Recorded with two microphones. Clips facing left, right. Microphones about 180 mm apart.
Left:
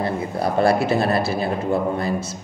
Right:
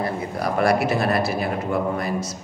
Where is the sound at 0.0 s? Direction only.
30° left (ahead or behind).